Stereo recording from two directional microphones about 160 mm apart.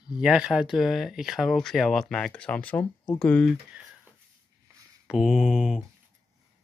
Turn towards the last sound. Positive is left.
turn(degrees=-5)  # may be behind; listen again after turning